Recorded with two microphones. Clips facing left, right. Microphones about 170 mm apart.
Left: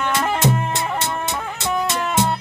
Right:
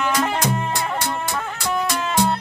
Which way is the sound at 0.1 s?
25° left (ahead or behind).